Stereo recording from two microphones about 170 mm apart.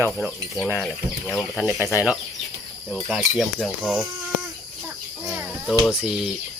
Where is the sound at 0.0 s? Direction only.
15° right (ahead or behind).